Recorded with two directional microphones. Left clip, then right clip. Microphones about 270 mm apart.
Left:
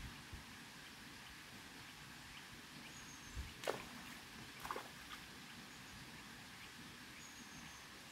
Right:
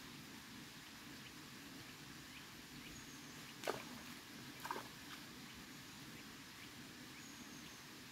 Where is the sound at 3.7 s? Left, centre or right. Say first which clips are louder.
Left 1 dB; centre.